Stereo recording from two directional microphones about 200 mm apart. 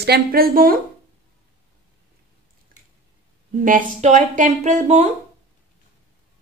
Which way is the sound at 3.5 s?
40° right (ahead or behind).